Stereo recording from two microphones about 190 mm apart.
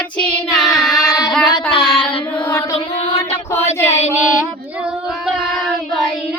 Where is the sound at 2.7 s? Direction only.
30° left (ahead or behind).